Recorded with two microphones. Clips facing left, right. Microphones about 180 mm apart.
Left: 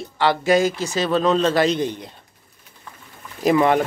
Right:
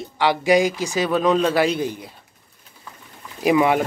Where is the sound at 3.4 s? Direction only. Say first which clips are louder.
Left 1 dB; 10° right (ahead or behind).